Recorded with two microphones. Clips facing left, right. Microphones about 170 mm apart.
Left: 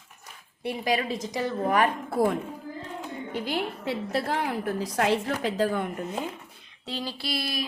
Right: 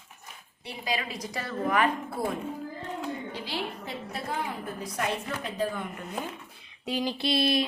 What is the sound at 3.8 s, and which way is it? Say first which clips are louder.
A woman's voice: left 8 dB; 75° left (ahead or behind).